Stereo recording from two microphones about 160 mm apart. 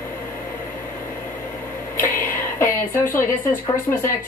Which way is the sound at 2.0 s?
15° left (ahead or behind).